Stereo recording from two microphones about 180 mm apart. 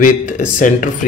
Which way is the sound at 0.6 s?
45° left (ahead or behind).